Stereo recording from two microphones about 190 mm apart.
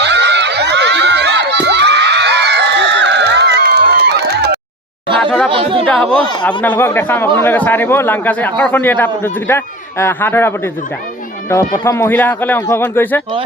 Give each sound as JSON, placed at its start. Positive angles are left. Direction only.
{"t": 0.0, "sound": "crowd", "side_deg": -65}
{"t": 5.5, "sound": "speech", "side_deg": -25}
{"t": 5.9, "sound": "a man's voice", "side_deg": 5}